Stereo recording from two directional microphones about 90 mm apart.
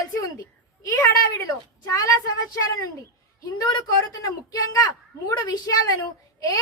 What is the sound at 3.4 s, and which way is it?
A woman's voice, 45° left (ahead or behind).